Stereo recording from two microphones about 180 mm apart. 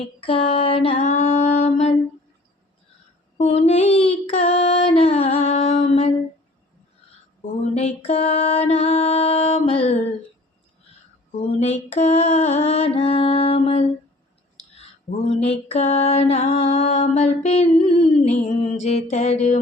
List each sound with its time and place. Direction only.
0.2 s a sound: 30° left (ahead or behind)
3.3 s child singing: 35° left (ahead or behind)
7.6 s music: 35° left (ahead or behind)
11.3 s music: 35° left (ahead or behind)
15.4 s music: 35° left (ahead or behind)